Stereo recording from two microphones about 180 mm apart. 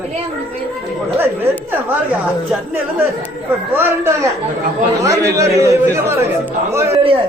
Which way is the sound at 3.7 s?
10° right (ahead or behind).